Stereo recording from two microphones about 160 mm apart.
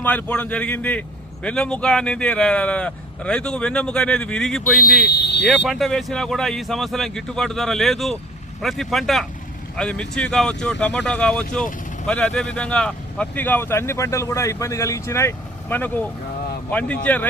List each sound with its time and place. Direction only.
0.0 s speech: 10° left (ahead or behind)
5.0 s a sound: 90° left
5.5 s speech: centre (ahead or behind)